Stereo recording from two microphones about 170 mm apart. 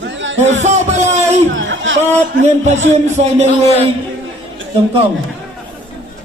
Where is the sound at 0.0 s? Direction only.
90° right.